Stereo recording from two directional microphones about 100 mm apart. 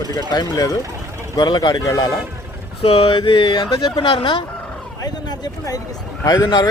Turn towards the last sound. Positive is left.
turn(degrees=40)  # may be behind; listen again after turning